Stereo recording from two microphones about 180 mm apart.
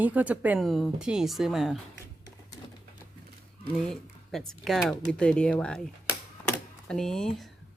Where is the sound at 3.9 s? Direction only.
Centre (ahead or behind).